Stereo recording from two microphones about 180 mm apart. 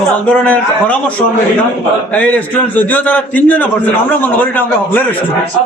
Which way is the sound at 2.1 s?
10° left (ahead or behind).